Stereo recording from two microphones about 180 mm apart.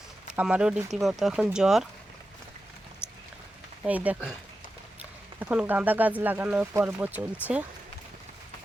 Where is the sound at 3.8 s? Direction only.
10° right (ahead or behind).